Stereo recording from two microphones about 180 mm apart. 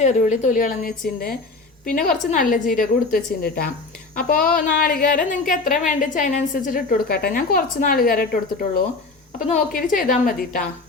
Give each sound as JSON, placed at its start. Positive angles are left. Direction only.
{"t": 0.0, "sound": "a woman's voice", "side_deg": 40}
{"t": 9.5, "sound": "a woman's voice", "side_deg": 45}